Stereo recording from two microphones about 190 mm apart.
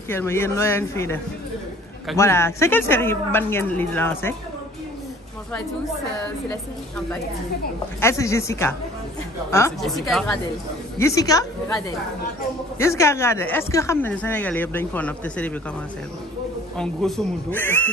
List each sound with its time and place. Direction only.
0.1 s speech: 10° left (ahead or behind)
8.0 s speech: 15° left (ahead or behind)
9.8 s speech: centre (ahead or behind)
11.0 s speech: 15° left (ahead or behind)
16.7 s speech: centre (ahead or behind)